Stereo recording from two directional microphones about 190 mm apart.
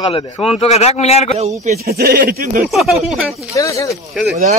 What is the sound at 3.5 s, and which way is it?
Speech, 15° left (ahead or behind).